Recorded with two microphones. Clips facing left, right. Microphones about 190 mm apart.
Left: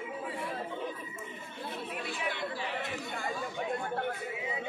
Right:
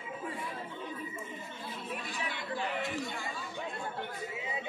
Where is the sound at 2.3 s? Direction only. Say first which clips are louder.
Right 2 dB; 55° left (ahead or behind).